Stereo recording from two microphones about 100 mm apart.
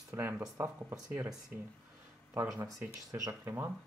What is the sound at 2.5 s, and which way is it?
Speech, 30° right (ahead or behind).